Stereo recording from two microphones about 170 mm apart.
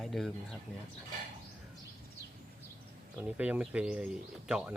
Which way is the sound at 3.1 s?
10° right (ahead or behind).